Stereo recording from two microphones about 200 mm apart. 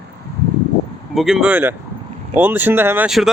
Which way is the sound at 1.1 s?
Centre (ahead or behind).